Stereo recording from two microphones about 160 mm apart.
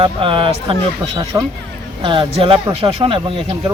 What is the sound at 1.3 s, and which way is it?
Speech, 20° right (ahead or behind).